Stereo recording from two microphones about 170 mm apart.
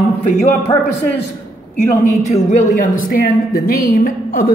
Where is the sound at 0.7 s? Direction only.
40° left (ahead or behind).